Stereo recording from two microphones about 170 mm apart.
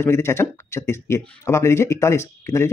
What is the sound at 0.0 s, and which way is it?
Speech, 15° left (ahead or behind).